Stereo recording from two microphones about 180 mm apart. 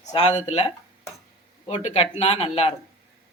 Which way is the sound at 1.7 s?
40° left (ahead or behind).